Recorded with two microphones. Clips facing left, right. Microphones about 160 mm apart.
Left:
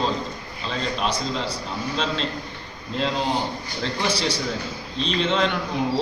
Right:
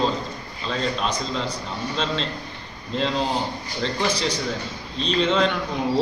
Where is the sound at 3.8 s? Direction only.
10° left (ahead or behind).